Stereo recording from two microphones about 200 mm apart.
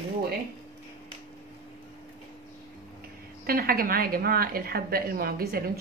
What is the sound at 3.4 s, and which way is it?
Speech, 50° right (ahead or behind).